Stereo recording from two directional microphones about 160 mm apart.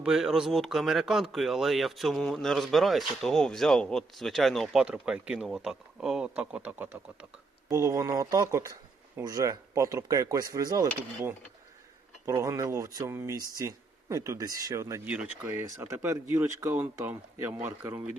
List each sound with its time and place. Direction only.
0.0 s speech: 5° right (ahead or behind)
7.7 s speech: 20° right (ahead or behind)